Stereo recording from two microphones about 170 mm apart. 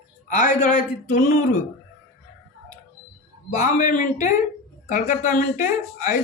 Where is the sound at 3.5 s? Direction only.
45° left (ahead or behind).